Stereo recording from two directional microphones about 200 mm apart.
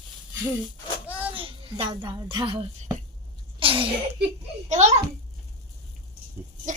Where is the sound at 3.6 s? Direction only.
25° right (ahead or behind).